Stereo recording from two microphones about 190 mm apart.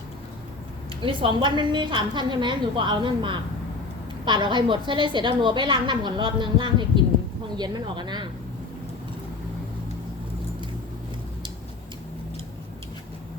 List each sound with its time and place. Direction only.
1.0 s a woman's voice: 25° right (ahead or behind)